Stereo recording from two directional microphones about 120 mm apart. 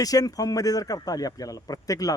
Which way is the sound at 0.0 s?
30° left (ahead or behind).